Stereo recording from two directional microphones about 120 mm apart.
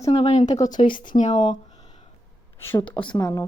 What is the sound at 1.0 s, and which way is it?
Speech, 90° left.